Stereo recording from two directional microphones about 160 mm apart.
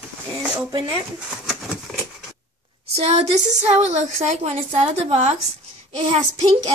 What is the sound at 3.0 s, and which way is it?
A woman's voice, 40° right (ahead or behind).